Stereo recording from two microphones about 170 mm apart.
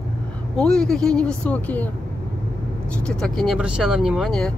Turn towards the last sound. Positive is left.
turn(degrees=5)  # may be behind; listen again after turning